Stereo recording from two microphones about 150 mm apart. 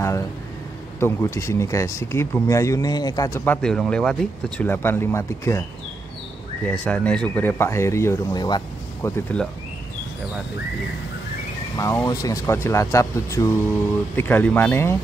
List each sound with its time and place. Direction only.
0.9 s speech: 15° left (ahead or behind)
3.4 s speech: 5° left (ahead or behind)
4.6 s speech: 15° left (ahead or behind)
6.6 s speech: 10° left (ahead or behind); by 8.6 s 30° left (ahead or behind)
9.0 s speech: 15° left (ahead or behind)
11.7 s speech: 20° left (ahead or behind)